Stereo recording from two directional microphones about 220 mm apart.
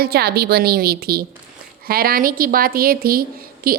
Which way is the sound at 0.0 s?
45° right (ahead or behind).